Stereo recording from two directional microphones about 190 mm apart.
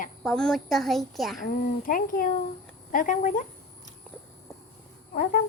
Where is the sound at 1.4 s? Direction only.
45° left (ahead or behind).